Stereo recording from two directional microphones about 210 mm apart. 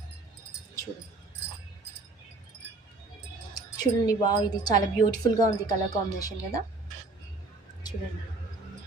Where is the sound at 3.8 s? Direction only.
20° left (ahead or behind).